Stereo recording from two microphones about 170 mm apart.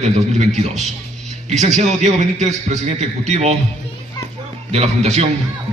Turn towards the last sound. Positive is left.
turn(degrees=-40)  # may be behind; listen again after turning